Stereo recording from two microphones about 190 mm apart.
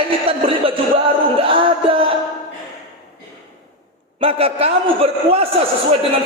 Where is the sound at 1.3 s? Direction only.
30° right (ahead or behind).